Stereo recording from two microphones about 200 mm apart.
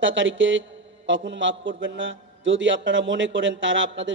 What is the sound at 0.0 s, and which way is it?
A man's voice, 70° right (ahead or behind).